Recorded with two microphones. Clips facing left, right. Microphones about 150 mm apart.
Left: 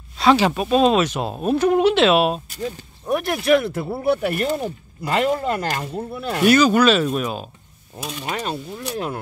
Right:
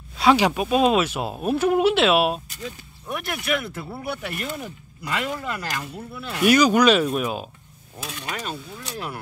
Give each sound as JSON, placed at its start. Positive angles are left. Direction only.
{"t": 0.2, "sound": "speech", "side_deg": -10}
{"t": 2.6, "sound": "speech", "side_deg": 30}
{"t": 6.4, "sound": "speech", "side_deg": -10}
{"t": 8.0, "sound": "speech", "side_deg": 20}